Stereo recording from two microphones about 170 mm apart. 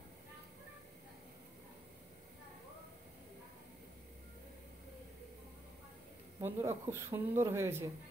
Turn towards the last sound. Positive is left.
turn(degrees=-15)  # may be behind; listen again after turning